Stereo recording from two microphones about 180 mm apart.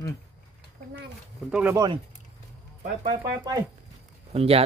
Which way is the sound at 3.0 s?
25° right (ahead or behind).